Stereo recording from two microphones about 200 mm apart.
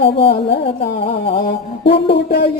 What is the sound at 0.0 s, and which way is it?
Music, 25° left (ahead or behind).